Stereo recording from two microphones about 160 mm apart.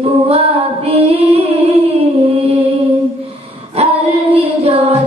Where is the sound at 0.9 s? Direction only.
40° right (ahead or behind).